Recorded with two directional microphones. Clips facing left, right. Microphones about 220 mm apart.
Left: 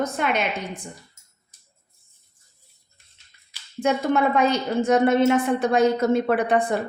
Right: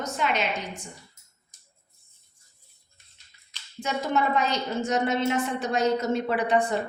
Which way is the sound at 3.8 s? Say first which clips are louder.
Left 6 dB; 55° left (ahead or behind).